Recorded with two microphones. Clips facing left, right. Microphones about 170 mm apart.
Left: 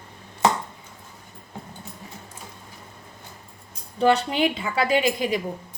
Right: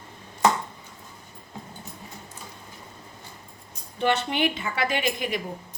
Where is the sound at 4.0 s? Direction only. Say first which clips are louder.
Left 4 dB; 35° left (ahead or behind).